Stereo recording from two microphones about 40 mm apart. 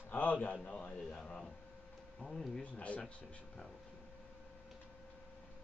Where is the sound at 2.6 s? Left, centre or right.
Left.